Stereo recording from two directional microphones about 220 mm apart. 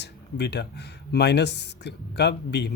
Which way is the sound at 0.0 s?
50° left (ahead or behind).